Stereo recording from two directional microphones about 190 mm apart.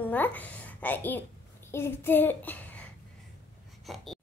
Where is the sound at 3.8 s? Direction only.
Centre (ahead or behind).